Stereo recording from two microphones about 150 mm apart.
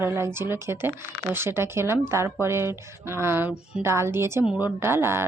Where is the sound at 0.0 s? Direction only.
15° right (ahead or behind).